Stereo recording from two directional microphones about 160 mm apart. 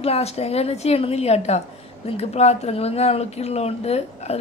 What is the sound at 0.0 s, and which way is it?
Speech, 40° left (ahead or behind).